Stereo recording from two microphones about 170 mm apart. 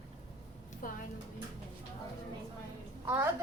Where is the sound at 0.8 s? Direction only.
55° left (ahead or behind).